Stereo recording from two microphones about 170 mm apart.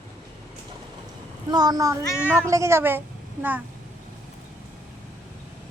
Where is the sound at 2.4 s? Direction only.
15° right (ahead or behind).